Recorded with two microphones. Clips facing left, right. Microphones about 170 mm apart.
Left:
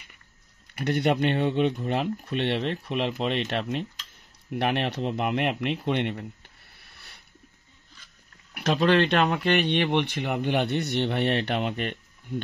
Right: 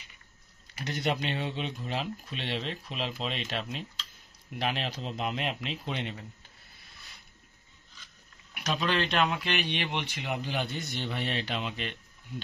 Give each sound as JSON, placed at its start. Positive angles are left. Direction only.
{"t": 0.7, "sound": "speech", "side_deg": 60}
{"t": 6.8, "sound": "a sound", "side_deg": 65}
{"t": 8.8, "sound": "speech", "side_deg": 60}